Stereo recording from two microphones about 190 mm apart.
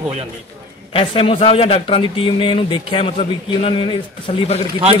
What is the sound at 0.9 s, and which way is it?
A man's voice, 30° left (ahead or behind).